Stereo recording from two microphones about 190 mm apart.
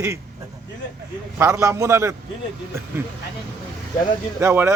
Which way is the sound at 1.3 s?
15° right (ahead or behind).